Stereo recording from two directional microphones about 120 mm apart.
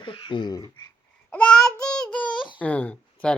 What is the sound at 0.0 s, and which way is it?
Speech, 45° left (ahead or behind).